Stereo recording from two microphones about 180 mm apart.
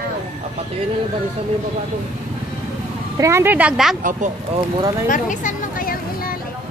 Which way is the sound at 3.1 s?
15° right (ahead or behind).